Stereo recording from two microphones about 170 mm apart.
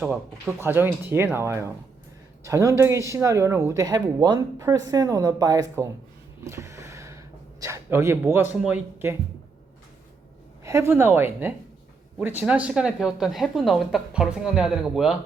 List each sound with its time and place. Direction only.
0.1 s speech: 15° right (ahead or behind)
6.4 s gasp: 15° right (ahead or behind)
8.6 s speech: 10° right (ahead or behind)
10.6 s speech: 15° right (ahead or behind)